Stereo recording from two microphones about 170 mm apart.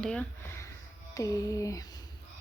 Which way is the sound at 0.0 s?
5° left (ahead or behind).